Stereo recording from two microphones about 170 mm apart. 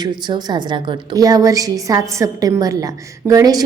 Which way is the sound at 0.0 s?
25° right (ahead or behind).